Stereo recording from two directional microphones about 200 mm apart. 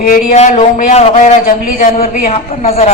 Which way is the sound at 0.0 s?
40° left (ahead or behind).